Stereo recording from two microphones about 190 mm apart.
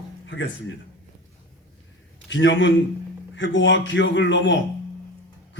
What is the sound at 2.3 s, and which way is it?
A man's voice, 70° left (ahead or behind).